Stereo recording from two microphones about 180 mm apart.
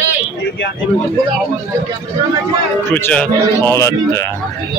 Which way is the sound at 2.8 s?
10° left (ahead or behind).